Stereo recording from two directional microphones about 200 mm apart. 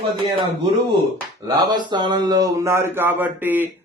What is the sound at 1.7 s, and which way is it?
Speech, 20° right (ahead or behind).